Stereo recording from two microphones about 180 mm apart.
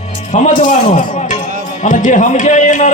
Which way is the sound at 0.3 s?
40° left (ahead or behind).